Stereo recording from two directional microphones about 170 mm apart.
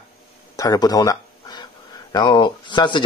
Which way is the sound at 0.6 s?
20° left (ahead or behind).